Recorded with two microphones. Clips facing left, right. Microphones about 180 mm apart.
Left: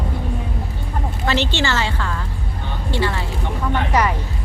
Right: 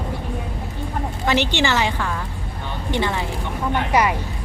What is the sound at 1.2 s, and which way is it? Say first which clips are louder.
Speech: right 1 dB; 15° right (ahead or behind).